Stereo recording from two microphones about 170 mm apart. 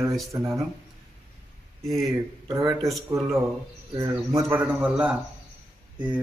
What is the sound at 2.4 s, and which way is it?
Speech, 25° right (ahead or behind).